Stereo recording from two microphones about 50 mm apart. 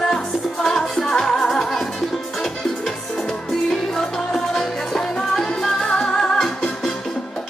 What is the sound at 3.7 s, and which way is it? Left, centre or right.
Music, centre.